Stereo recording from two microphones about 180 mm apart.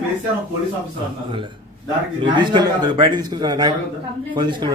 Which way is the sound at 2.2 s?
25° right (ahead or behind).